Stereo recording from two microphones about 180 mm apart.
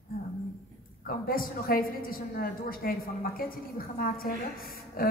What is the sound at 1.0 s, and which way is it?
A woman's voice, 55° left (ahead or behind).